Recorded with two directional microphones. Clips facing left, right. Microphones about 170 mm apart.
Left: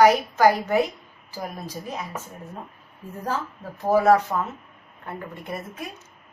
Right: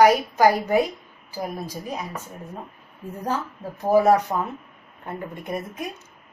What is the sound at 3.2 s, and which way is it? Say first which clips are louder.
A woman's voice: right 1 dB; 15° right (ahead or behind).